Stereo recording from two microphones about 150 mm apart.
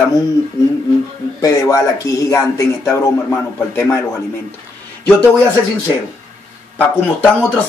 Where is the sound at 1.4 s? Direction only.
20° left (ahead or behind).